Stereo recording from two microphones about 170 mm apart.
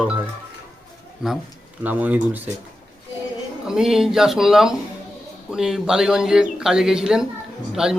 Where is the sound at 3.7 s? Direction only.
5° right (ahead or behind).